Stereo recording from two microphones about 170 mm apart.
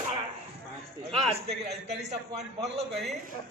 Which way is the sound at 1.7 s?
80° right.